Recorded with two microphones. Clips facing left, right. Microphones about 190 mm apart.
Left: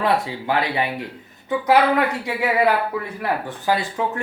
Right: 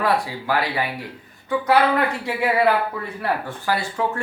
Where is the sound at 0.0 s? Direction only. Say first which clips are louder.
Left 1 dB; 20° left (ahead or behind).